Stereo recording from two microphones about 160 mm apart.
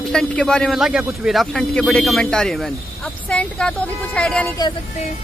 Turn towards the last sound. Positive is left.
turn(degrees=5)  # may be behind; listen again after turning